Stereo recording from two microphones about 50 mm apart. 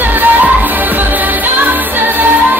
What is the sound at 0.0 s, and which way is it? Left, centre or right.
Music, right.